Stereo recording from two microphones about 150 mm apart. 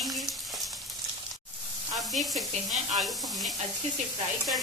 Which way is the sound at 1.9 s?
Centre (ahead or behind).